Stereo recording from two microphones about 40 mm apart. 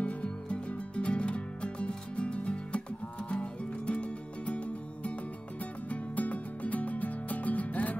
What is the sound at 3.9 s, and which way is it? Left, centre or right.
Music, left.